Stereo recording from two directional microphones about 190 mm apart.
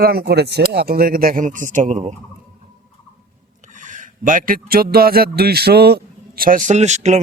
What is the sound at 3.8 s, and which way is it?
Speech, 40° right (ahead or behind).